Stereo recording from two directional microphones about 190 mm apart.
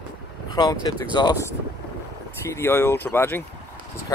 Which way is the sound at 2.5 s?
15° left (ahead or behind).